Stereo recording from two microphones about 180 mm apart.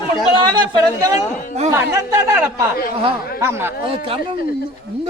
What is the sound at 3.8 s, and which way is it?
Speech, 30° right (ahead or behind).